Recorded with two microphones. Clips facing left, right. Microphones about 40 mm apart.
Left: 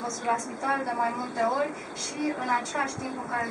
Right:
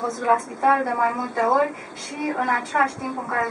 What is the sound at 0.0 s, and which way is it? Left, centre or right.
A woman's voice, centre.